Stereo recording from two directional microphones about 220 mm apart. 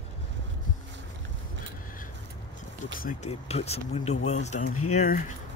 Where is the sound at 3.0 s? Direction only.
35° left (ahead or behind).